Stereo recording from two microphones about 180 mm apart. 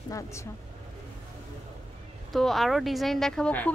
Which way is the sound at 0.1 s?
15° left (ahead or behind).